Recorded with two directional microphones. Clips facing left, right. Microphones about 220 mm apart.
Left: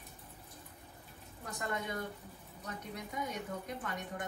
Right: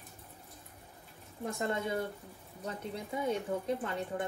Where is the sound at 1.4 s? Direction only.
25° right (ahead or behind).